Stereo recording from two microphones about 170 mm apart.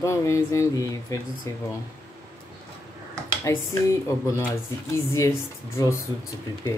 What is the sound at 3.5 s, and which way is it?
Speech, 15° left (ahead or behind).